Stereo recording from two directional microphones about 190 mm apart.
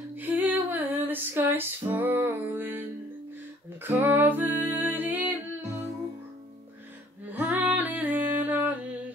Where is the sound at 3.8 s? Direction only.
10° right (ahead or behind).